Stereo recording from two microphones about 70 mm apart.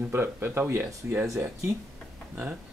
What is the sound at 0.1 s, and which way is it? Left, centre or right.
Speech, right.